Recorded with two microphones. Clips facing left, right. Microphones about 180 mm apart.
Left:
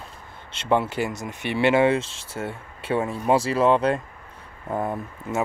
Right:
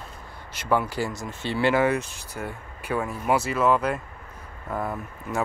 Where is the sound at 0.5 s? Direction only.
25° left (ahead or behind).